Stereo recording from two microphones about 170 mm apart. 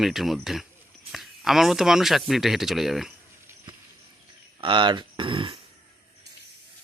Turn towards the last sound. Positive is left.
turn(degrees=-30)  # may be behind; listen again after turning